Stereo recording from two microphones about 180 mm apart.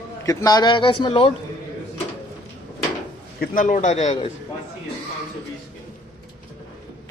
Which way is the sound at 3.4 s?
50° left (ahead or behind).